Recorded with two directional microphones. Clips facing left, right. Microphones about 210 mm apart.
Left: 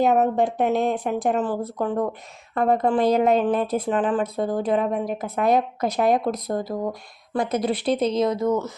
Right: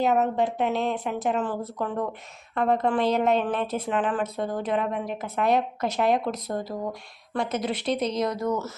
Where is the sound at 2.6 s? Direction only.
40° left (ahead or behind).